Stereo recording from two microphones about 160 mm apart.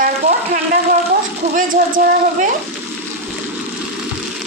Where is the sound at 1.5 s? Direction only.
55° right (ahead or behind).